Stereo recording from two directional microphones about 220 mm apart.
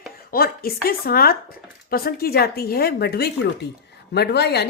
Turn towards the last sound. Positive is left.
turn(degrees=50)  # may be behind; listen again after turning